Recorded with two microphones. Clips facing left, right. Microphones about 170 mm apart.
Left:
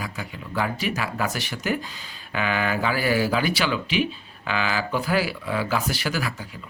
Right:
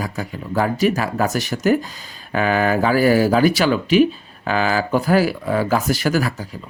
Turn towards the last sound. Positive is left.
turn(degrees=-40)  # may be behind; listen again after turning